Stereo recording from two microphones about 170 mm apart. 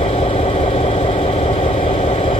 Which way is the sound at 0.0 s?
35° left (ahead or behind).